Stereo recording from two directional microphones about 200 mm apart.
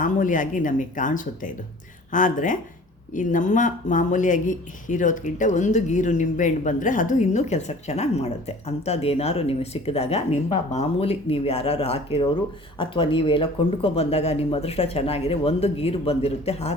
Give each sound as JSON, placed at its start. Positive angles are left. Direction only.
{"t": 0.0, "sound": "speech", "side_deg": 40}